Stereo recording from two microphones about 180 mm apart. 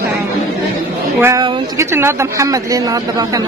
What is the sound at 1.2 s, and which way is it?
Speech, 15° right (ahead or behind).